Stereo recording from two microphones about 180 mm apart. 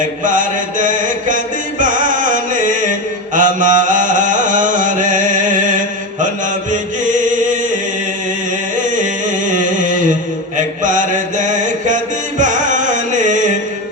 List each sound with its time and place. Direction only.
0.3 s chant: 45° right (ahead or behind)
1.8 s music: 45° right (ahead or behind)
7.2 s chant: 45° right (ahead or behind)
9.5 s music: 45° right (ahead or behind)
10.8 s mantra: 45° right (ahead or behind)
12.4 s carnatic music: 45° right (ahead or behind)